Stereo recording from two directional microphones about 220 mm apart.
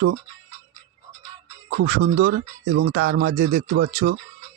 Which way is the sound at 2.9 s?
45° right (ahead or behind).